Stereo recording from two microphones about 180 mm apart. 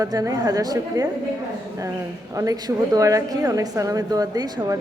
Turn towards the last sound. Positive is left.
turn(degrees=-20)  # may be behind; listen again after turning